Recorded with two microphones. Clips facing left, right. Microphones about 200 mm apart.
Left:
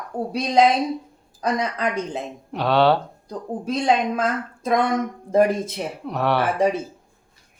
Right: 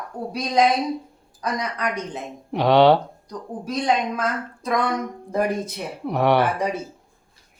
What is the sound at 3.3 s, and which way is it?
Speech, 25° left (ahead or behind).